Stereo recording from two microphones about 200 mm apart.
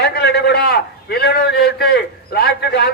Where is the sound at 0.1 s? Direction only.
55° left (ahead or behind).